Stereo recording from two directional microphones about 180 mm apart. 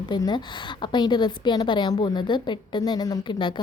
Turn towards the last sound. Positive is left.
turn(degrees=25)  # may be behind; listen again after turning